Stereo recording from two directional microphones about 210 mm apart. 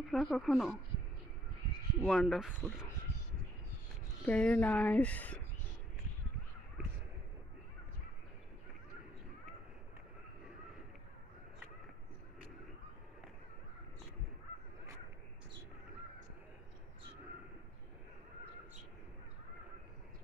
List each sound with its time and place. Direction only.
0.1 s speech: centre (ahead or behind)
2.0 s speech: centre (ahead or behind)
4.3 s speech: 5° left (ahead or behind)